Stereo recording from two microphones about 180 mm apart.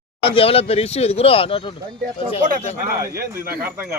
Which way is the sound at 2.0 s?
50° right (ahead or behind).